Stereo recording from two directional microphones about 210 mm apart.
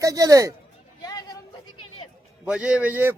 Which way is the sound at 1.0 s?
20° left (ahead or behind).